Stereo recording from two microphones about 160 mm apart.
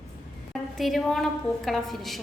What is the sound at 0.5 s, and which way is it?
A woman's voice, centre (ahead or behind).